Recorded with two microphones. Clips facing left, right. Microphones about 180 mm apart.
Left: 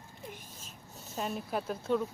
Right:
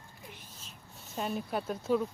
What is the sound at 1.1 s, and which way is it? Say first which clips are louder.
A woman's voice: right 1 dB; centre (ahead or behind).